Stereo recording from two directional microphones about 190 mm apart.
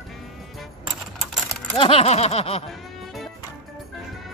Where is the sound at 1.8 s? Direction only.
30° left (ahead or behind).